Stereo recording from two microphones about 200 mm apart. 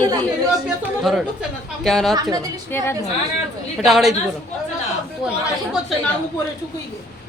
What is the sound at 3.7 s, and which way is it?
Speech, centre (ahead or behind).